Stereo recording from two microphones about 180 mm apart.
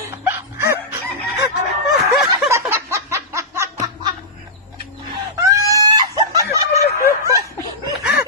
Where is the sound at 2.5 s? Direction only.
15° right (ahead or behind).